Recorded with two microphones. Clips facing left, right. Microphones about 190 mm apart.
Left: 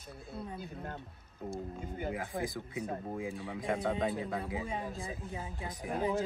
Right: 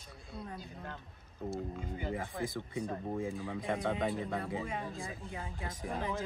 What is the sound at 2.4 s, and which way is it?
Speech, centre (ahead or behind).